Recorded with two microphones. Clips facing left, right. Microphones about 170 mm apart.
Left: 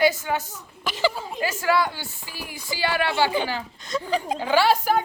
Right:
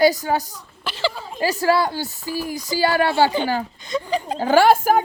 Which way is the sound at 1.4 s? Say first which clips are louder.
Right 4 dB; 35° right (ahead or behind).